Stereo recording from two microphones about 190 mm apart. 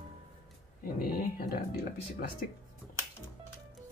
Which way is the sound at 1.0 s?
50° left (ahead or behind).